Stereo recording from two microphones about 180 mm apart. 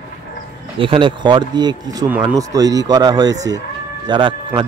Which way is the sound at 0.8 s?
30° right (ahead or behind).